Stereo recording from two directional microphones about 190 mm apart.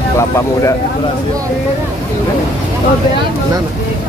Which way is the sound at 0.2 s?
15° left (ahead or behind).